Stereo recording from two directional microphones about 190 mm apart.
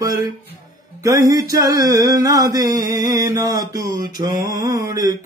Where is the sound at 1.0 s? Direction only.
15° right (ahead or behind).